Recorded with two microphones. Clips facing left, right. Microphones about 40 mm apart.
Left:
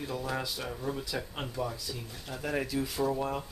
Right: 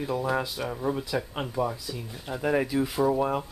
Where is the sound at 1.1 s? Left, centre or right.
Centre.